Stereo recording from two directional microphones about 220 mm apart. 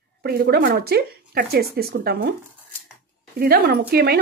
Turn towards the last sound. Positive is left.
turn(degrees=-45)  # may be behind; listen again after turning